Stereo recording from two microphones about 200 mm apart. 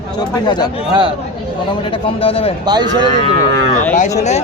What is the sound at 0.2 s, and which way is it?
Speech, 20° left (ahead or behind).